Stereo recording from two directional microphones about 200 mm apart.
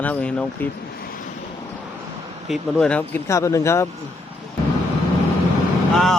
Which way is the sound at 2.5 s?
5° left (ahead or behind).